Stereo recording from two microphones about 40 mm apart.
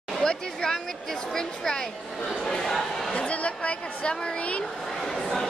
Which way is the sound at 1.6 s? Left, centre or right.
Centre.